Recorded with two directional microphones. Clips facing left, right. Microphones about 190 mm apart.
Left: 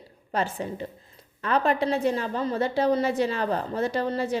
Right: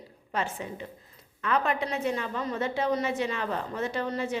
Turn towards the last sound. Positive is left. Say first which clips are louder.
# left 4 dB
turn(degrees=35)  # may be behind; listen again after turning